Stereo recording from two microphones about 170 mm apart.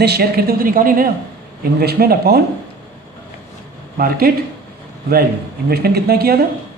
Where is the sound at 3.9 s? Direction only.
60° right (ahead or behind).